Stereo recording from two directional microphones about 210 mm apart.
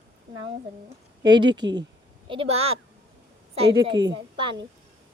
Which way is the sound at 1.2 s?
20° right (ahead or behind).